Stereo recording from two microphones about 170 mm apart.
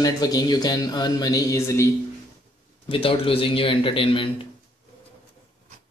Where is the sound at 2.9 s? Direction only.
30° left (ahead or behind).